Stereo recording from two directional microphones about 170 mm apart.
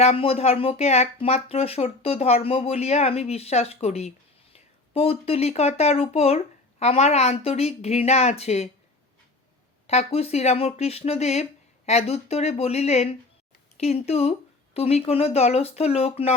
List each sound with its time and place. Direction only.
0.0 s speech: 35° left (ahead or behind)
9.8 s speech: 40° left (ahead or behind)